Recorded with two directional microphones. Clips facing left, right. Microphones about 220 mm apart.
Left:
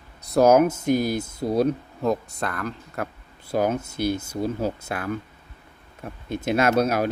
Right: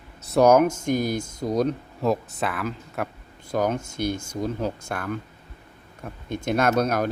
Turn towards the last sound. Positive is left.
turn(degrees=5)  # may be behind; listen again after turning